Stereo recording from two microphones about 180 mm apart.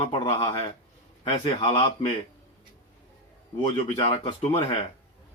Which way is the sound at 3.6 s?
35° left (ahead or behind).